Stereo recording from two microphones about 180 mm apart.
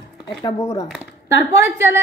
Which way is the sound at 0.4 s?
15° left (ahead or behind).